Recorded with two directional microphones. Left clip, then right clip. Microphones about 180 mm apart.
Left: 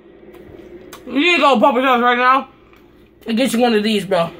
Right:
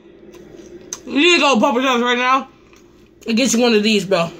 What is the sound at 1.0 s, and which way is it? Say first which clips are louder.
A woman's voice: even; 40° right (ahead or behind).